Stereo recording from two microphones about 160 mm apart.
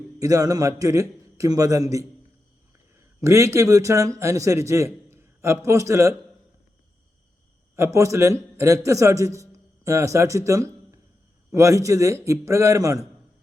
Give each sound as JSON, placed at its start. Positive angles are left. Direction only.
{"t": 0.2, "sound": "a man's voice", "side_deg": -20}
{"t": 3.2, "sound": "a man's voice", "side_deg": -20}
{"t": 7.8, "sound": "a man's voice", "side_deg": -20}